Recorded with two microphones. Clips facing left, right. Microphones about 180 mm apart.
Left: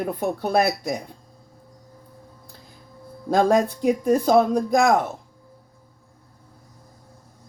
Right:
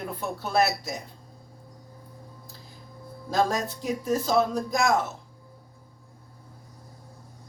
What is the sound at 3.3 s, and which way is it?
Speech, 55° left (ahead or behind).